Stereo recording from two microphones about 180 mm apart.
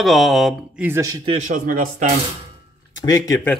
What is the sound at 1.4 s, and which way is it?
Speech, 45° right (ahead or behind).